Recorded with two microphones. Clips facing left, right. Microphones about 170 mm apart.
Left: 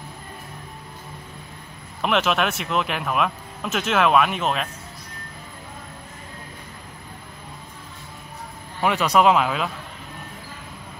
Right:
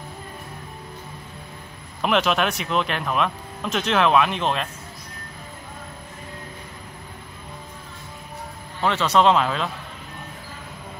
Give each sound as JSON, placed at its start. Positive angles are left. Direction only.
{"t": 2.0, "sound": "speech", "side_deg": 0}
{"t": 8.8, "sound": "speech", "side_deg": 10}